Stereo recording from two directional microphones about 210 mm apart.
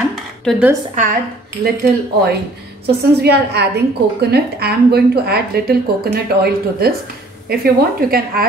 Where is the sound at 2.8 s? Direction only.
50° right (ahead or behind).